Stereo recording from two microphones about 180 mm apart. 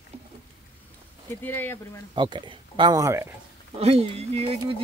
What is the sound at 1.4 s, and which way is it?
Speech, 10° left (ahead or behind).